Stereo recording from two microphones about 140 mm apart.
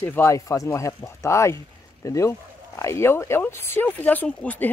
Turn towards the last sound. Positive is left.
turn(degrees=10)  # may be behind; listen again after turning